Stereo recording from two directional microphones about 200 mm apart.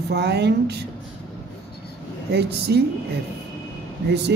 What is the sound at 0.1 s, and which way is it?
Speech, 60° right (ahead or behind).